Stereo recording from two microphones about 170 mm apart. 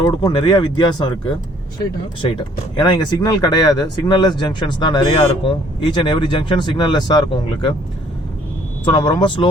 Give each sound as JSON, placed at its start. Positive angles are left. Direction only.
{"t": 0.0, "sound": "speech", "side_deg": 25}
{"t": 2.7, "sound": "speech", "side_deg": 25}
{"t": 8.8, "sound": "speech", "side_deg": 30}